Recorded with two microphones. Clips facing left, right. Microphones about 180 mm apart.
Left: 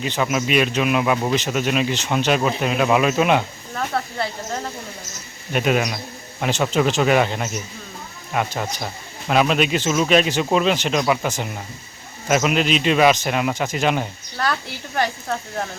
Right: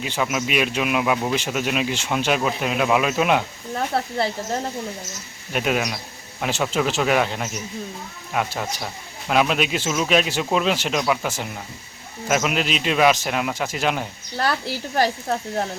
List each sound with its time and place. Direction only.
0.0 s speech: 5° right (ahead or behind)
3.8 s speech: 25° right (ahead or behind)
5.5 s speech: centre (ahead or behind)
14.9 s speech: 30° right (ahead or behind)